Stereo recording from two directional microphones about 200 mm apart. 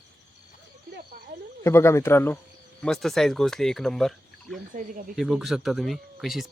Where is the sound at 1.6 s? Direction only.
15° left (ahead or behind).